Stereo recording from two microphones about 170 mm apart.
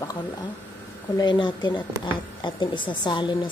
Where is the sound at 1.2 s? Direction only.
25° left (ahead or behind).